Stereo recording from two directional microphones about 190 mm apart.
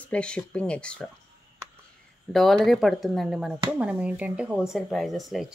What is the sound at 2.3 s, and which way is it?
Speech, centre (ahead or behind).